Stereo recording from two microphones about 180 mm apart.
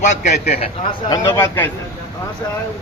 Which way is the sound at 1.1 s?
15° left (ahead or behind).